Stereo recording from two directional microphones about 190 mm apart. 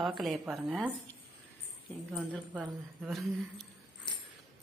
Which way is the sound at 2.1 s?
Centre (ahead or behind).